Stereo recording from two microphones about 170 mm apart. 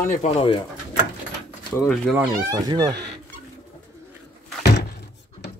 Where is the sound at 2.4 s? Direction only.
20° right (ahead or behind).